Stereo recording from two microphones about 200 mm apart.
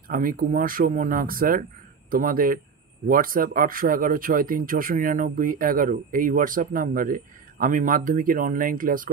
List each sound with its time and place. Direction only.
0.1 s speech: 45° right (ahead or behind)